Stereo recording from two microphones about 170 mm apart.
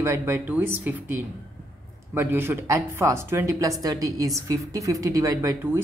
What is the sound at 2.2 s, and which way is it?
A woman's voice, 15° right (ahead or behind).